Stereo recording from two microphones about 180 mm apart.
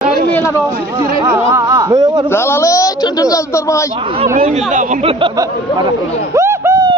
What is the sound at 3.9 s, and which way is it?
Speech, 30° right (ahead or behind).